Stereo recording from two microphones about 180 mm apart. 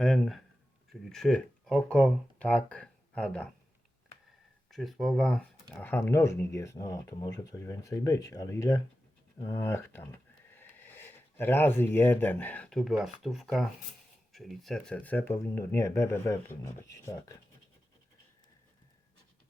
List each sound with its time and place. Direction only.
0.0 s speech: centre (ahead or behind)
4.7 s speech: centre (ahead or behind); by 17.3 s 15° left (ahead or behind)